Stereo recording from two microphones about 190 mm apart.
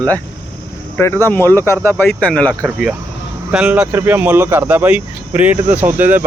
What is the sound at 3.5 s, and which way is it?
Speech, 5° right (ahead or behind).